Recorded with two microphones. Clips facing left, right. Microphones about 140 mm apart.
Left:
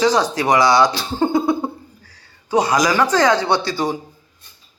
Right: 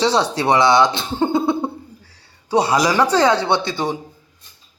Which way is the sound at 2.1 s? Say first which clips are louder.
Even; 30° right (ahead or behind).